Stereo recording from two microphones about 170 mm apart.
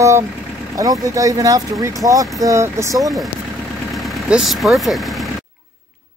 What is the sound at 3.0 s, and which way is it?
Speech, centre (ahead or behind).